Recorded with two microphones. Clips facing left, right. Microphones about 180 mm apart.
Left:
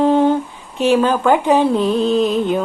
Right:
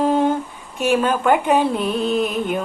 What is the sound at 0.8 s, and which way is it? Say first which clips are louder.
Music: left 4 dB; 25° left (ahead or behind).